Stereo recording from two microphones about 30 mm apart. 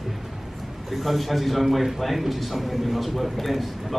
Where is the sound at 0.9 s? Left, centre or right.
Centre.